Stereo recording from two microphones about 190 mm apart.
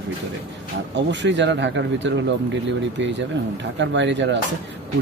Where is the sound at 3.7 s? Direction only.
70° right (ahead or behind).